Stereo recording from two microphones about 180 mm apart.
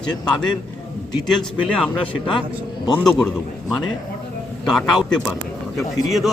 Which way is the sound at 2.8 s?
25° left (ahead or behind).